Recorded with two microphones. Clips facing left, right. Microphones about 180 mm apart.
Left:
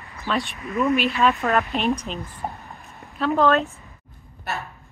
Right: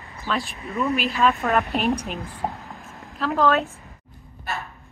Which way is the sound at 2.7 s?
Centre (ahead or behind).